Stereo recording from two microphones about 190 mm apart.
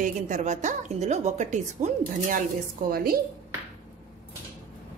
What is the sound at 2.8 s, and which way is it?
Speech, 50° right (ahead or behind).